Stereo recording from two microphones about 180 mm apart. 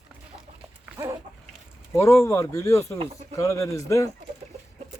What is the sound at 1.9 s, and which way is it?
Speech, 15° left (ahead or behind).